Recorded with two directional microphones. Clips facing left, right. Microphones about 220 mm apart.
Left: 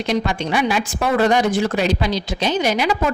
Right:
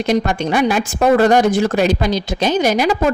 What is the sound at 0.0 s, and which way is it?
A woman's voice, 50° right (ahead or behind).